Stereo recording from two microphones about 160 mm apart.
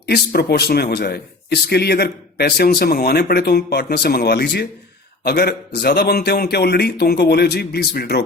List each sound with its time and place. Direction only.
0.0 s a man's voice: 90° left